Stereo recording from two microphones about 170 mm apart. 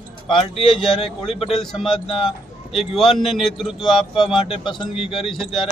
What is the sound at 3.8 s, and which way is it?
Speech, 30° left (ahead or behind).